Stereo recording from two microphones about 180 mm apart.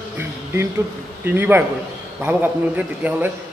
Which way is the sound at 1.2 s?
10° right (ahead or behind).